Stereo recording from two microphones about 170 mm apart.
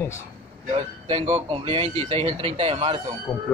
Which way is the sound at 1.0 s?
35° right (ahead or behind).